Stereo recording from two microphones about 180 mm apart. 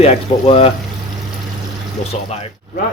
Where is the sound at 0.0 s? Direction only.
35° left (ahead or behind).